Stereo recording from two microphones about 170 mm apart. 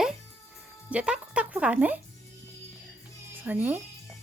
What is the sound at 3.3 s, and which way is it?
Speech, 10° right (ahead or behind).